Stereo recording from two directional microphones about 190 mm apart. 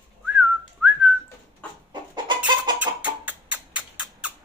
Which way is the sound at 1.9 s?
25° right (ahead or behind).